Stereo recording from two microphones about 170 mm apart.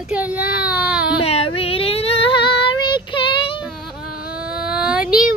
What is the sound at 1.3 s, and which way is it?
Child singing, 35° left (ahead or behind).